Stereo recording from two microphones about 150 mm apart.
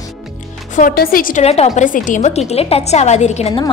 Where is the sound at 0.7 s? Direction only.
75° left (ahead or behind).